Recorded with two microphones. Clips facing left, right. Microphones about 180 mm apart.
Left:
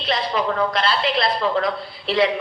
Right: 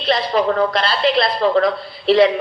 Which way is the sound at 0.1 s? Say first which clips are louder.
Right 5 dB; 35° right (ahead or behind).